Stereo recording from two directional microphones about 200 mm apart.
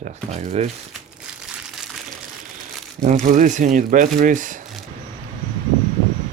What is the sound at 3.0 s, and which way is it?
Speech, 35° right (ahead or behind).